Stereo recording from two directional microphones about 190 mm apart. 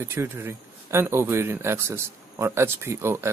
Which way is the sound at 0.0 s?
15° right (ahead or behind).